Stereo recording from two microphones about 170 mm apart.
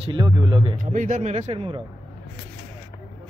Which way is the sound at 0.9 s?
50° right (ahead or behind).